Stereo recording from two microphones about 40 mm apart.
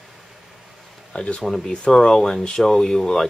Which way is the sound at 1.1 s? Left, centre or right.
Left.